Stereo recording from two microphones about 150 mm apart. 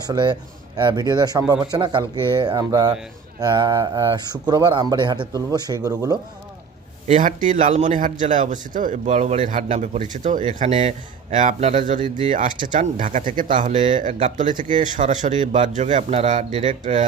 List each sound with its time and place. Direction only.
0.1 s speech: 30° right (ahead or behind)
7.1 s a man's voice: 60° right (ahead or behind); by 16.3 s 45° right (ahead or behind)
16.8 s speech: 55° right (ahead or behind)